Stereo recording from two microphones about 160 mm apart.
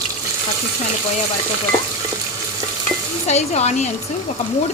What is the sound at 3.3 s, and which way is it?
Speech, 45° left (ahead or behind).